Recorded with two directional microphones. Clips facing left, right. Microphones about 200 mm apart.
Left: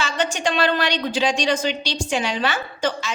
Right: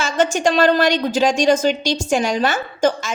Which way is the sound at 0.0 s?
45° right (ahead or behind).